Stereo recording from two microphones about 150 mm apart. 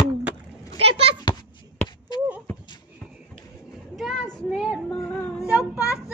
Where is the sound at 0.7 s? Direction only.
40° right (ahead or behind).